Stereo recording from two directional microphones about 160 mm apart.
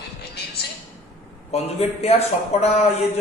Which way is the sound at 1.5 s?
40° left (ahead or behind).